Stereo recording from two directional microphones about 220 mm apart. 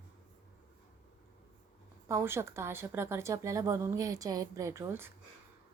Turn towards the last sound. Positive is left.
turn(degrees=-10)  # may be behind; listen again after turning